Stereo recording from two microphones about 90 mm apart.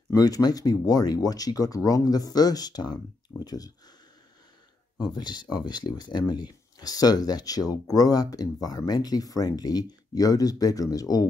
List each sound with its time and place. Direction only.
0.1 s speech: 45° left (ahead or behind)
4.9 s speech: 50° left (ahead or behind)